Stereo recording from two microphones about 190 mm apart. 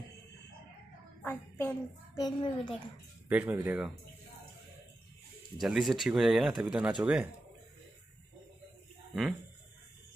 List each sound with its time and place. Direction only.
1.2 s child singing: 10° left (ahead or behind)
2.2 s a child's voice: 25° left (ahead or behind)
3.3 s speech: 5° right (ahead or behind)
5.6 s speech: centre (ahead or behind)